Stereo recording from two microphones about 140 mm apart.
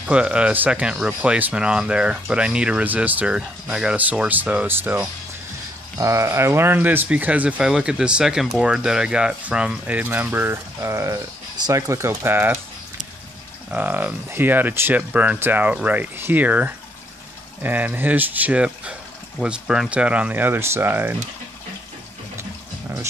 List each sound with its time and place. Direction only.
0.0 s speech: 10° right (ahead or behind)
13.7 s speech: 10° right (ahead or behind)
22.4 s water: 15° right (ahead or behind)